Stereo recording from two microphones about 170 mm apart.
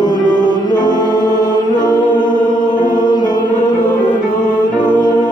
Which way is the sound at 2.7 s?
25° left (ahead or behind).